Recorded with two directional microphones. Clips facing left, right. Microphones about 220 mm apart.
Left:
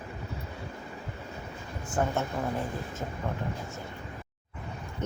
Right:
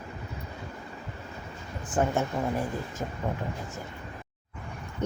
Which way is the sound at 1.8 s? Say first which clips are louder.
Right 3 dB; 15° right (ahead or behind).